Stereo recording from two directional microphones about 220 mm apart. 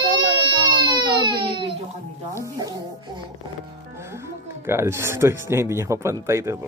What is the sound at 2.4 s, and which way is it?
Music, 15° right (ahead or behind).